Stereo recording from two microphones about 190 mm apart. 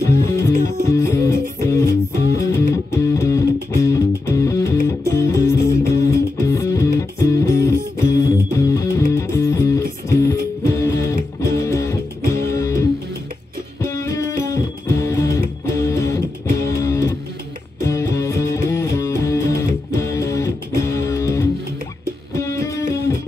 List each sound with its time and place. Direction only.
0.0 s music: 15° left (ahead or behind)